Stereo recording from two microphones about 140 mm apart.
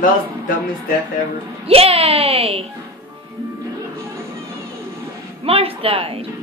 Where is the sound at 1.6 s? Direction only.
45° right (ahead or behind).